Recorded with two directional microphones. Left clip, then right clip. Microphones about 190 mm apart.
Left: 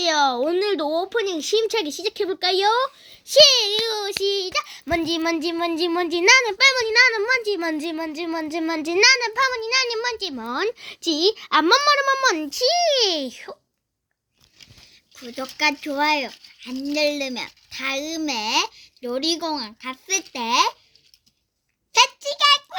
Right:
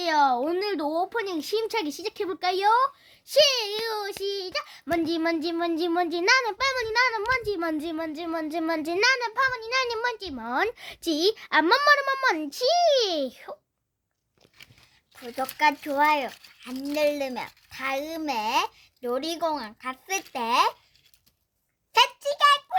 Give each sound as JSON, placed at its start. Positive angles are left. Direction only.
{"t": 0.0, "sound": "speech", "side_deg": 10}
{"t": 4.2, "sound": "speech", "side_deg": 15}
{"t": 7.3, "sound": "a child's voice", "side_deg": 20}
{"t": 9.6, "sound": "a child's voice", "side_deg": 0}
{"t": 10.2, "sound": "speech", "side_deg": 15}
{"t": 10.5, "sound": "a child's voice", "side_deg": -15}
{"t": 15.1, "sound": "a child's voice", "side_deg": -35}
{"t": 21.9, "sound": "a sound", "side_deg": -35}